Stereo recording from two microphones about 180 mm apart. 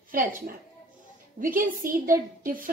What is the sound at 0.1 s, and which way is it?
Speech, 50° right (ahead or behind).